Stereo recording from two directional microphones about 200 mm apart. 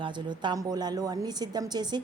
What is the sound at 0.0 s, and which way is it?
A woman's voice, 20° right (ahead or behind).